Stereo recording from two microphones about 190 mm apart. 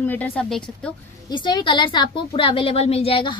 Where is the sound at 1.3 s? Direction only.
25° left (ahead or behind).